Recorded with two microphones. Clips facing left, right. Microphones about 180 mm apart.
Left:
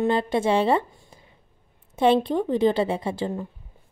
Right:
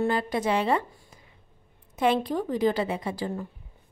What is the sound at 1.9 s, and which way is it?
Speech, 30° left (ahead or behind).